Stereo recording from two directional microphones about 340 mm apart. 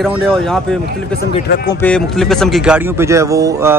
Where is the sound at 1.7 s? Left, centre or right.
Centre.